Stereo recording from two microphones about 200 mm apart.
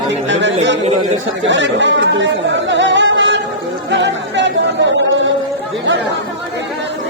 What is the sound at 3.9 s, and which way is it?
Music, 65° right (ahead or behind).